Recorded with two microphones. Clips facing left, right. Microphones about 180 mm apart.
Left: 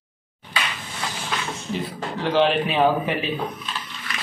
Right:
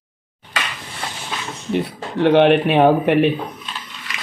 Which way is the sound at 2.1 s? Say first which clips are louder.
Right 7 dB; 65° right (ahead or behind).